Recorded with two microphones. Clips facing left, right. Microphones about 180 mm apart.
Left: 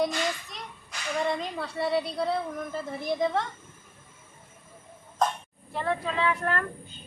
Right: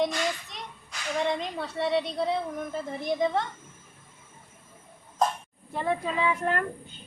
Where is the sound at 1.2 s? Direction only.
Centre (ahead or behind).